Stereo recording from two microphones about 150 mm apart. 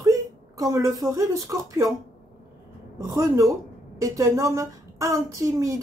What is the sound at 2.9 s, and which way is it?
Speech, 20° right (ahead or behind).